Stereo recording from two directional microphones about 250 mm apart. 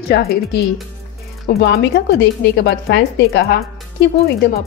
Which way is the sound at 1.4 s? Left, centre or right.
Left.